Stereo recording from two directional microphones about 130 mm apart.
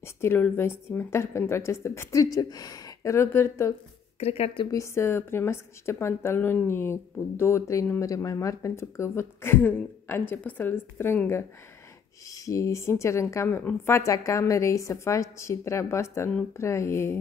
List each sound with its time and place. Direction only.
0.0 s a woman's voice: 20° left (ahead or behind)
4.2 s a woman's voice: 50° left (ahead or behind)
4.6 s a woman's voice: 25° left (ahead or behind)